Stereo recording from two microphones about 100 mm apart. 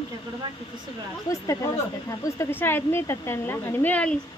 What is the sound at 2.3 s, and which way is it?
A woman's voice, 25° left (ahead or behind).